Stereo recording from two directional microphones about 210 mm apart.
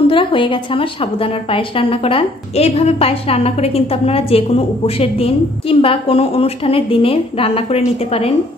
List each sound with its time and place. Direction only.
0.1 s a woman's voice: 25° left (ahead or behind)